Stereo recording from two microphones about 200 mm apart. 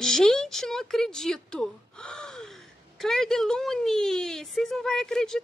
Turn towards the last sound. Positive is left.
turn(degrees=0)  # may be behind; listen again after turning